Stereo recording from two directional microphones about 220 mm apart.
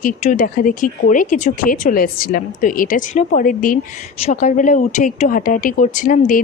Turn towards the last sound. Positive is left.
turn(degrees=40)  # may be behind; listen again after turning